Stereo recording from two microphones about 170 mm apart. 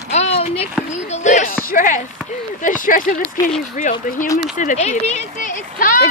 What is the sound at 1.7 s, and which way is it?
Speech, 50° left (ahead or behind).